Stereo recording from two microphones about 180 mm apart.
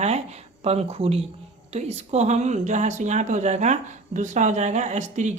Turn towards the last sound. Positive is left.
turn(degrees=-40)  # may be behind; listen again after turning